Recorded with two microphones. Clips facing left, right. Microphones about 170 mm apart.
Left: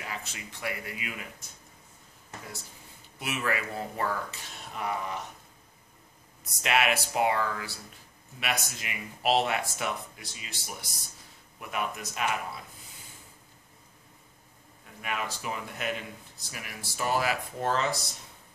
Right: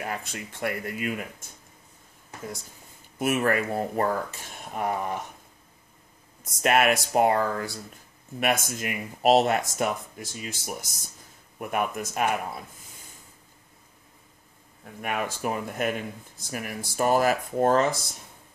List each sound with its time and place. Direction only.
0.0 s speech: 50° right (ahead or behind)
3.2 s speech: 50° right (ahead or behind)
6.6 s speech: 50° right (ahead or behind)
15.0 s speech: 50° right (ahead or behind)